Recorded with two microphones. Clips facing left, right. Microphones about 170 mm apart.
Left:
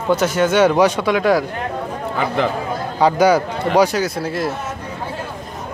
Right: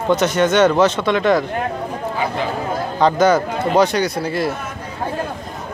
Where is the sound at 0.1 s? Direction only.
5° left (ahead or behind).